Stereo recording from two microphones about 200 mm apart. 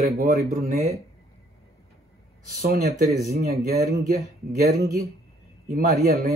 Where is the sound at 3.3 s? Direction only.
50° right (ahead or behind).